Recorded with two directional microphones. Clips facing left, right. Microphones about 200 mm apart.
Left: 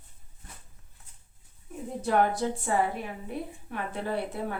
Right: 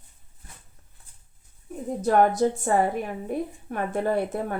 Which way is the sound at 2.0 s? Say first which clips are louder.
Right 5 dB; 45° right (ahead or behind).